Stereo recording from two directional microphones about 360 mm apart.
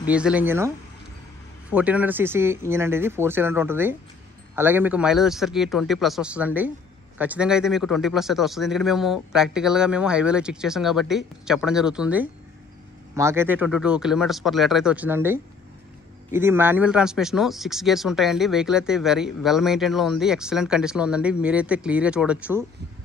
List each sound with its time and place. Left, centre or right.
0.0 s speech: centre